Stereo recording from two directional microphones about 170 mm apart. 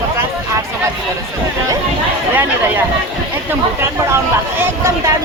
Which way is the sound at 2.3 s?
10° right (ahead or behind).